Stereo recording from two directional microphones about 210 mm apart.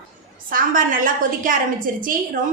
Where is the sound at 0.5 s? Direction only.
40° right (ahead or behind).